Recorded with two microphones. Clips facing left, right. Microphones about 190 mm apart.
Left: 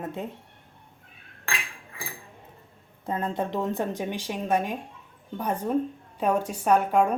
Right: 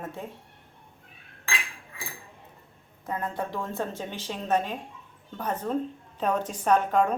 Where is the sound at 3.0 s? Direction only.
25° left (ahead or behind).